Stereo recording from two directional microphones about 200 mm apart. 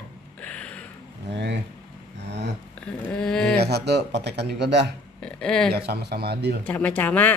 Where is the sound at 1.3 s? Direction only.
60° right (ahead or behind).